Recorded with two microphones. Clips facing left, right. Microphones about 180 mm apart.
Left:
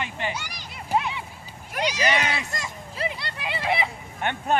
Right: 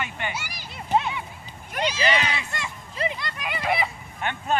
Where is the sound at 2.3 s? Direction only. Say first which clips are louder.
Left 1 dB; 40° left (ahead or behind).